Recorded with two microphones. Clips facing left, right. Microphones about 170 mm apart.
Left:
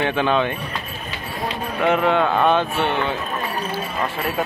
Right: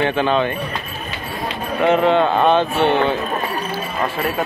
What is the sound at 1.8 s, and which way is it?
Speech, 20° right (ahead or behind).